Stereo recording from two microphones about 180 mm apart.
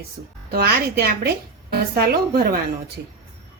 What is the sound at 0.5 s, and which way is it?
A woman's voice, 60° right (ahead or behind).